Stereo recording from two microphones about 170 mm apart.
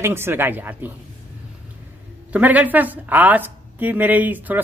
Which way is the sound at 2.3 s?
10° right (ahead or behind).